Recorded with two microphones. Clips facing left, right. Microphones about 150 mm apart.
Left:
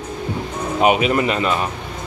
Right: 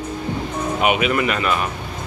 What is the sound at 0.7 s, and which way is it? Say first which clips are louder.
Speech: left 3 dB; 35° left (ahead or behind).